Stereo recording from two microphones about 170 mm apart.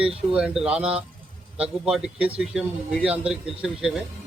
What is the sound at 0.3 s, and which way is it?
Speech, 5° right (ahead or behind).